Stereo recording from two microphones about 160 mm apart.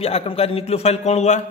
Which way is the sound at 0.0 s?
40° left (ahead or behind).